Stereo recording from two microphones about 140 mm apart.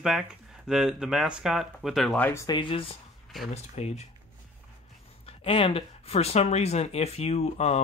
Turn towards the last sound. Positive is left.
turn(degrees=50)  # may be behind; listen again after turning